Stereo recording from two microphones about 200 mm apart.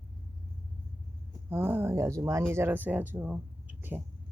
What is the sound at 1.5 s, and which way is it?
Speech, 10° right (ahead or behind).